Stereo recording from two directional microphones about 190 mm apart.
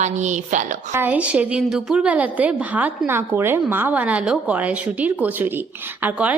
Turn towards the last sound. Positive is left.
turn(degrees=-10)  # may be behind; listen again after turning